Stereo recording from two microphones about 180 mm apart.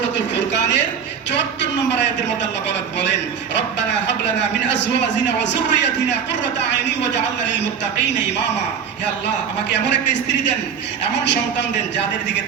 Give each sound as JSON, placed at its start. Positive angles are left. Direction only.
{"t": 0.3, "sound": "a sound", "side_deg": 75}
{"t": 2.4, "sound": "a man's voice", "side_deg": 75}
{"t": 9.7, "sound": "a man's voice", "side_deg": 75}